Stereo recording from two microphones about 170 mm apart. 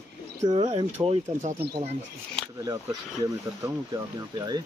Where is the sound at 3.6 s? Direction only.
20° right (ahead or behind).